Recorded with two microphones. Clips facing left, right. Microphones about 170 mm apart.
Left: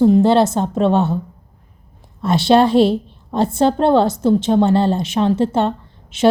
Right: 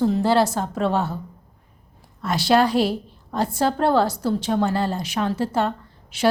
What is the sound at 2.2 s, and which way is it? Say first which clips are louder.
A woman's voice: left 5 dB; 25° left (ahead or behind).